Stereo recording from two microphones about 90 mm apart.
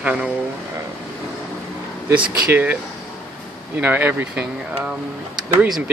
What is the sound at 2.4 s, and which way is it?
Speech, 20° right (ahead or behind).